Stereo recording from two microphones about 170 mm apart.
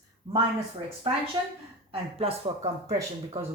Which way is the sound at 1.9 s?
35° right (ahead or behind).